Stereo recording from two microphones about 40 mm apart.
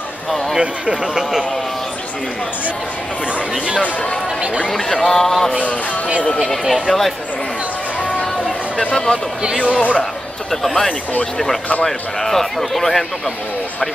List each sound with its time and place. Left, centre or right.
0.6 s speech: right
3.8 s speech: left
5.0 s a man's voice: centre
6.9 s speech: centre
8.7 s speech: centre
9.4 s speech: right
9.8 s speech: left
10.5 s a man's voice: centre